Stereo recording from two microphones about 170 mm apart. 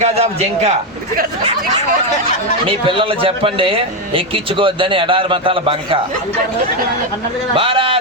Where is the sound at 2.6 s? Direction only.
30° right (ahead or behind).